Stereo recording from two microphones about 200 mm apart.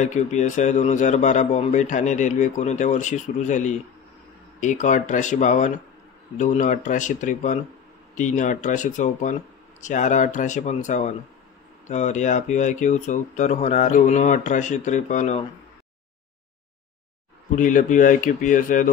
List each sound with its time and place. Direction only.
0.0 s a man's voice: 35° left (ahead or behind)
17.6 s a man's voice: 40° left (ahead or behind)